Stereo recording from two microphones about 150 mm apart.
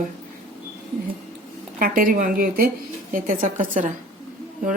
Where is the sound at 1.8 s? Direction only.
70° right (ahead or behind).